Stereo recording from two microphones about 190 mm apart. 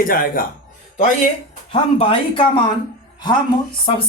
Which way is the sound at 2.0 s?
25° left (ahead or behind).